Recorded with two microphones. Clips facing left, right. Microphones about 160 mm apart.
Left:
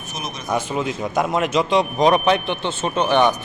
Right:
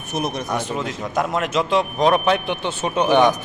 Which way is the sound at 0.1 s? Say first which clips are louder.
Right 8 dB; 65° right (ahead or behind).